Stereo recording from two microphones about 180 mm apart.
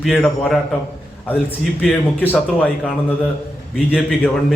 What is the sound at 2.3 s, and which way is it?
Speech, 5° right (ahead or behind).